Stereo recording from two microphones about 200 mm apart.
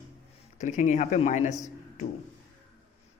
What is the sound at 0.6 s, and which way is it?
Speech, 35° left (ahead or behind).